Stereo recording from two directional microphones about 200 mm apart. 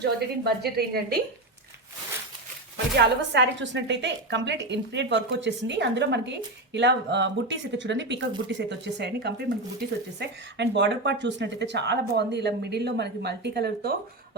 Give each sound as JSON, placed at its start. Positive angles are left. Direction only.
{"t": 0.0, "sound": "a woman's voice", "side_deg": -55}
{"t": 2.9, "sound": "speech", "side_deg": -60}